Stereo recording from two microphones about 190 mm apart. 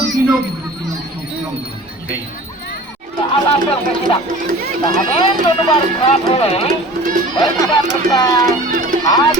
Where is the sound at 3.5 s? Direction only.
25° left (ahead or behind).